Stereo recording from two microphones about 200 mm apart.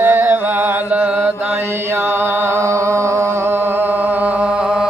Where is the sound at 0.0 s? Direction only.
10° right (ahead or behind).